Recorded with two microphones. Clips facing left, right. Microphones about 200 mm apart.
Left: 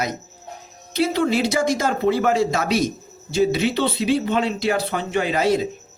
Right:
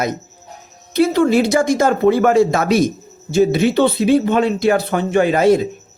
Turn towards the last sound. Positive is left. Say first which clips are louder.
# right 7 dB
turn(degrees=-50)  # may be behind; listen again after turning